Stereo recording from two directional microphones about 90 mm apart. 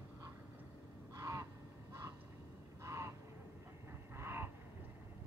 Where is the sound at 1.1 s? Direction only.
40° right (ahead or behind).